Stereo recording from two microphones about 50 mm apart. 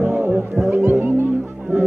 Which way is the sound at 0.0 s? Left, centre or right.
Right.